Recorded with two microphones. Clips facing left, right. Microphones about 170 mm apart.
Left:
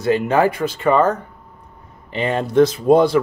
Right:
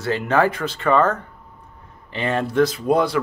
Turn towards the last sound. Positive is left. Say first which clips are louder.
# left 6 dB
turn(degrees=25)  # may be behind; listen again after turning